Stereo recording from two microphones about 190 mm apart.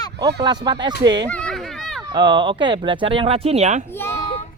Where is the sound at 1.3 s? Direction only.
5° left (ahead or behind).